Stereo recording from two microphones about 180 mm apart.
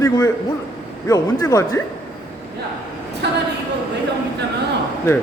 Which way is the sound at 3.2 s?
70° right (ahead or behind).